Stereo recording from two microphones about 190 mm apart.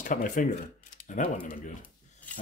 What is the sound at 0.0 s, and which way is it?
Speech, 45° left (ahead or behind).